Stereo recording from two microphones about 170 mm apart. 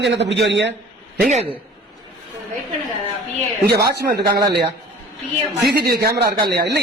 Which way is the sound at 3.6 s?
70° right (ahead or behind).